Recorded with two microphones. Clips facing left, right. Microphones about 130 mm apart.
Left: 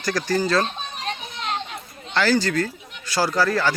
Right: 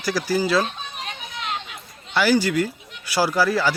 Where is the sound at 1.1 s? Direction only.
35° left (ahead or behind).